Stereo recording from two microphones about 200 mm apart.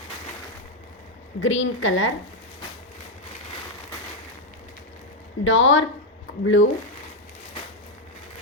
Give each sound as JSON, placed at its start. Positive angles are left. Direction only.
{"t": 1.4, "sound": "a woman's voice", "side_deg": 70}
{"t": 5.5, "sound": "a woman's voice", "side_deg": 70}